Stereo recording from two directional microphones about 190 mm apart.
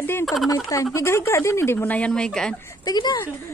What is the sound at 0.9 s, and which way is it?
Speech, 15° left (ahead or behind).